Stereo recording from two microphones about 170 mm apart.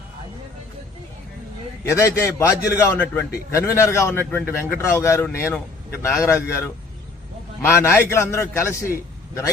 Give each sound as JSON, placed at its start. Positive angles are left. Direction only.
{"t": 1.8, "sound": "a man's voice", "side_deg": 15}